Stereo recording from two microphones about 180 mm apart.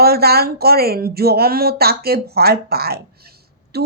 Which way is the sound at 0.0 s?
60° right (ahead or behind).